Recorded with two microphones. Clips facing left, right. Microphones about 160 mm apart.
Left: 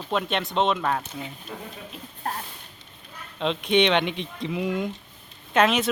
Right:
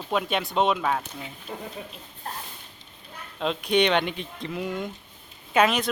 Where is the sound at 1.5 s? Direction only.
30° right (ahead or behind).